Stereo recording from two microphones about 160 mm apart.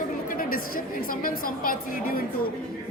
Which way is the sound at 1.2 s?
60° left (ahead or behind).